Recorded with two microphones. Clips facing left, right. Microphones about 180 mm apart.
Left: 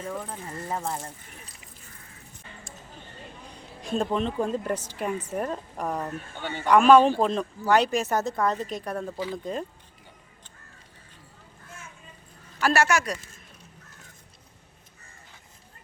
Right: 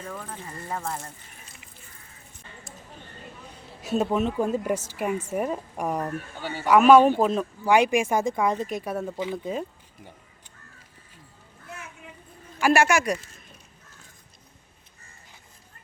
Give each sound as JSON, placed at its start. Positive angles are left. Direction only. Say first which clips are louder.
{"t": 0.1, "sound": "speech", "louder": "left 3 dB", "side_deg": 20}
{"t": 3.8, "sound": "a woman's voice", "louder": "right 2 dB", "side_deg": -5}
{"t": 9.1, "sound": "speech", "louder": "right 2 dB", "side_deg": -20}
{"t": 9.4, "sound": "speech", "louder": "right 1 dB", "side_deg": -5}
{"t": 11.7, "sound": "vehicle", "louder": "right 6 dB", "side_deg": -65}
{"t": 12.5, "sound": "speech", "louder": "right 3 dB", "side_deg": -10}